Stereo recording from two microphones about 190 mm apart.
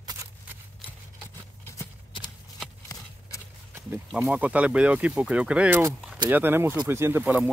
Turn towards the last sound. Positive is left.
turn(degrees=-10)  # may be behind; listen again after turning